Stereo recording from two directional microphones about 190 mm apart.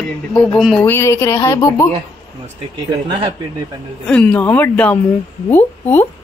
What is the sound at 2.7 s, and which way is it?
Speech, 20° right (ahead or behind).